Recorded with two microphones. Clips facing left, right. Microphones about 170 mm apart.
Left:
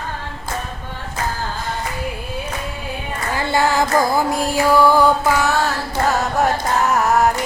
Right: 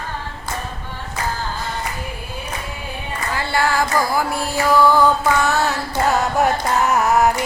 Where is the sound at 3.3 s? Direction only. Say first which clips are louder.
Left 2 dB; 20° left (ahead or behind).